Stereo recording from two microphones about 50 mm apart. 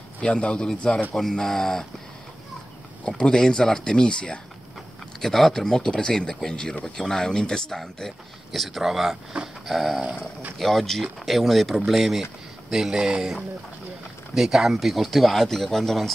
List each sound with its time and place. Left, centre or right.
0.2 s speech: left
3.1 s speech: centre
5.2 s speech: centre
8.5 s speech: centre
14.3 s speech: centre